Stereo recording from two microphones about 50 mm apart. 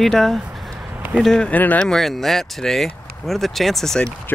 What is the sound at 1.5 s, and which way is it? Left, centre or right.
Speech, left.